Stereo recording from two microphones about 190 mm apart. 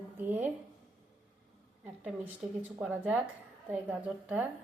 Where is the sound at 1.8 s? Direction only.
5° right (ahead or behind).